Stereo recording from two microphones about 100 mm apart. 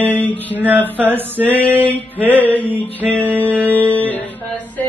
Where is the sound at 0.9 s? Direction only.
20° right (ahead or behind).